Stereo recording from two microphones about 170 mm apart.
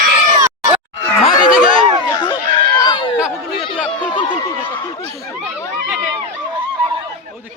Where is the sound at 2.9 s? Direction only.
25° left (ahead or behind).